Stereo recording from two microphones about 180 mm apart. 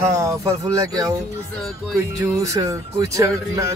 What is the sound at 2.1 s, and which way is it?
Speech, 15° right (ahead or behind).